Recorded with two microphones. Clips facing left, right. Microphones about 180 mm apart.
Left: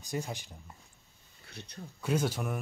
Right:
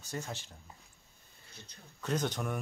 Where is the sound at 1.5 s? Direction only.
70° left (ahead or behind).